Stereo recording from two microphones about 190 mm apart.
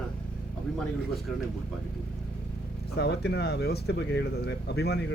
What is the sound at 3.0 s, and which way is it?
Speech, 60° left (ahead or behind).